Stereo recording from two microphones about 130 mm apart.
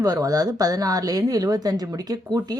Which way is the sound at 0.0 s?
30° right (ahead or behind).